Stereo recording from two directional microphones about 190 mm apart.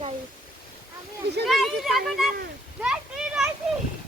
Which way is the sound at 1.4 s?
Centre (ahead or behind).